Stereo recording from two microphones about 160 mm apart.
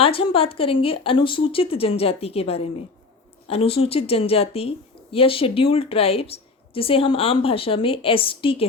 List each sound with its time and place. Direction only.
0.0 s a woman's voice: 35° left (ahead or behind)